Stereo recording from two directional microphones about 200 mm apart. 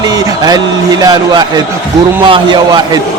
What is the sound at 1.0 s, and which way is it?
A man's voice, 20° right (ahead or behind).